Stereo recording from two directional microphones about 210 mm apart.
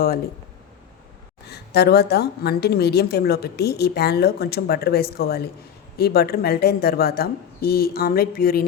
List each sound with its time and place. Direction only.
1.5 s a woman's voice: 50° left (ahead or behind)